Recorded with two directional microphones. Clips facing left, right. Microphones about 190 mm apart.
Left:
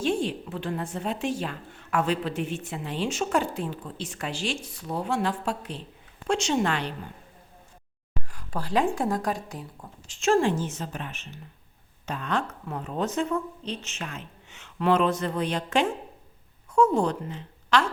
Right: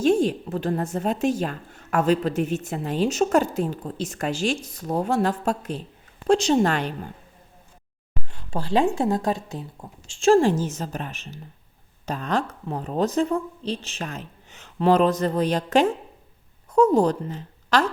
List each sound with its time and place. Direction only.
0.0 s a woman's voice: 45° right (ahead or behind)
8.3 s a woman's voice: 25° right (ahead or behind); by 17.8 s 40° right (ahead or behind)